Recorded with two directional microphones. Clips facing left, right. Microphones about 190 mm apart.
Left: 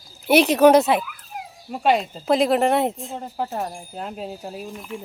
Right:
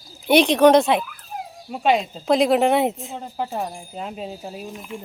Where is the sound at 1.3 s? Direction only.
45° right (ahead or behind).